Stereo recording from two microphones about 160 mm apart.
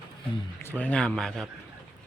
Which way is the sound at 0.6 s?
10° left (ahead or behind).